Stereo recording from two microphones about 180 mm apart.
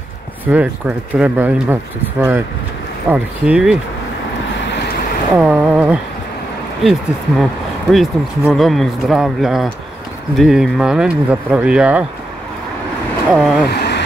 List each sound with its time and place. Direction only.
0.5 s speech: 10° right (ahead or behind)
5.3 s speech: 5° right (ahead or behind)
13.3 s speech: centre (ahead or behind)
13.7 s a sound: 70° left (ahead or behind)